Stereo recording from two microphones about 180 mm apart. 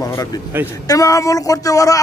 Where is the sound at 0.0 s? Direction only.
20° left (ahead or behind).